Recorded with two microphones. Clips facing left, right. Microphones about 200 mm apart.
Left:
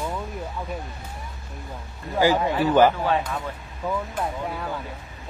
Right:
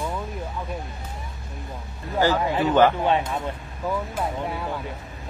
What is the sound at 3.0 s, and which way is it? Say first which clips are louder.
Speech: right 2 dB; 25° right (ahead or behind).